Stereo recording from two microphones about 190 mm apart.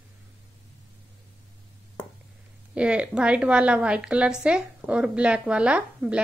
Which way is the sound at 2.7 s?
5° right (ahead or behind).